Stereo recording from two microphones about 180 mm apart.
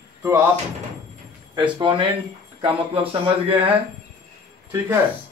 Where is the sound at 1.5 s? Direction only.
25° right (ahead or behind).